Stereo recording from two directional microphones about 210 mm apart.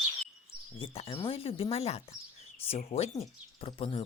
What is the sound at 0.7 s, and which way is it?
Speech, 25° left (ahead or behind).